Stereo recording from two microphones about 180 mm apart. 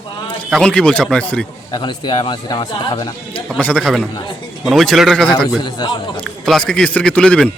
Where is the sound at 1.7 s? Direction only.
25° left (ahead or behind).